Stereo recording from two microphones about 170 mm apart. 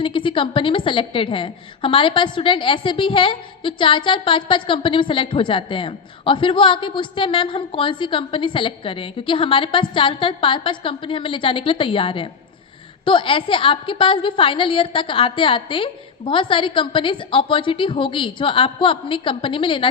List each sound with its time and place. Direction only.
0.0 s a woman's voice: 30° left (ahead or behind)